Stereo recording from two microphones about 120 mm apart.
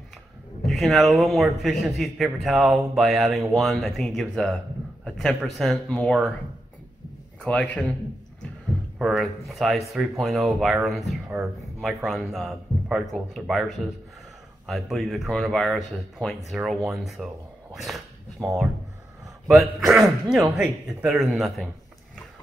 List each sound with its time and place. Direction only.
0.7 s a man's voice: centre (ahead or behind)
7.4 s a man's voice: 10° left (ahead or behind)
8.9 s a man's voice: 5° right (ahead or behind)
17.7 s dog: centre (ahead or behind)
19.4 s speech: centre (ahead or behind)